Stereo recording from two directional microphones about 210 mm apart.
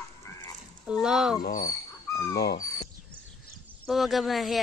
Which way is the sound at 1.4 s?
45° left (ahead or behind).